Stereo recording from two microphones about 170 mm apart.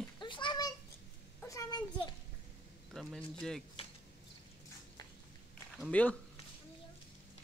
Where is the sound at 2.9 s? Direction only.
Centre (ahead or behind).